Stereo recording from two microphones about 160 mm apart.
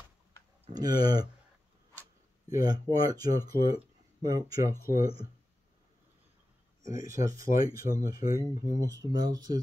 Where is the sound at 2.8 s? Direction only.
25° right (ahead or behind).